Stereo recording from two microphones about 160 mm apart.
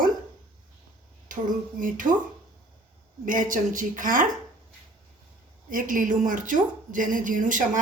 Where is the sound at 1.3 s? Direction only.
55° right (ahead or behind).